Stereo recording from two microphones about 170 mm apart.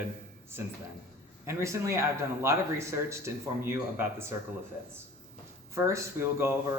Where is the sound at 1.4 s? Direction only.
15° right (ahead or behind).